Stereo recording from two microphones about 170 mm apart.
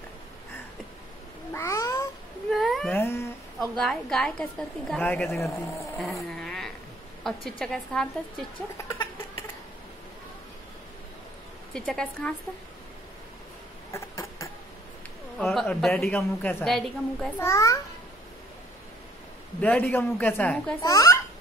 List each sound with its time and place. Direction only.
1.5 s cat: 15° left (ahead or behind)
2.5 s a sound: centre (ahead or behind)
2.9 s cat: 15° left (ahead or behind)
3.5 s a woman's voice: 5° left (ahead or behind)
5.9 s a sound: centre (ahead or behind)
7.2 s a woman's voice: 5° left (ahead or behind)
11.7 s a woman's voice: 5° left (ahead or behind)
13.9 s rodents: 15° left (ahead or behind)
15.3 s a woman's voice: centre (ahead or behind)
16.6 s a woman's voice: centre (ahead or behind)
17.4 s a man's voice: 15° left (ahead or behind)
19.6 s a man's voice: 10° left (ahead or behind)